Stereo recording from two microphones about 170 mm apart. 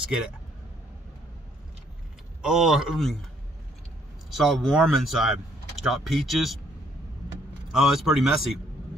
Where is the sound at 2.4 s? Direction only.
5° right (ahead or behind).